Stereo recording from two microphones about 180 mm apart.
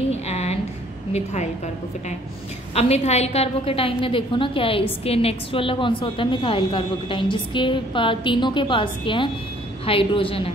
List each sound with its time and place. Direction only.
0.1 s a sound: 35° left (ahead or behind)
1.1 s a woman's voice: 40° left (ahead or behind)
2.7 s a woman's voice: 35° left (ahead or behind)